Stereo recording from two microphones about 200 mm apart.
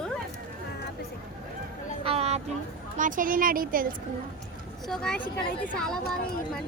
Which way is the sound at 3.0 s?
40° right (ahead or behind).